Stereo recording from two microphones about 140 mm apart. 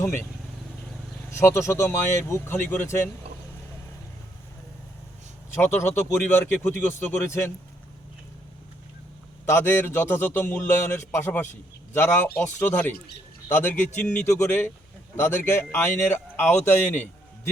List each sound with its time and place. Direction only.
0.0 s speech: 15° left (ahead or behind)
1.4 s speech: 20° left (ahead or behind)
5.5 s a man's voice: 15° left (ahead or behind)
9.5 s a man's voice: 15° left (ahead or behind)